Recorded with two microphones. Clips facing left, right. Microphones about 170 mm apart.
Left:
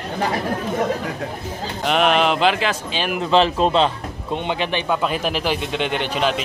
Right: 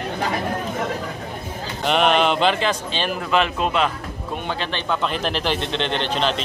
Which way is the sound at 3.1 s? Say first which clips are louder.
Left 6 dB; 30° left (ahead or behind).